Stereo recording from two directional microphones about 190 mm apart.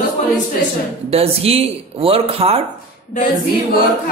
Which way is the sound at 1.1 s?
30° right (ahead or behind).